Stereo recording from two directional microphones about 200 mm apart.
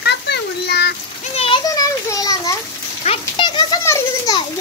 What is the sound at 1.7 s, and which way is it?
Children playing, 15° left (ahead or behind).